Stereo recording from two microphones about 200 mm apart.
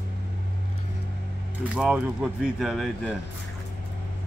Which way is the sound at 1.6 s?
5° right (ahead or behind).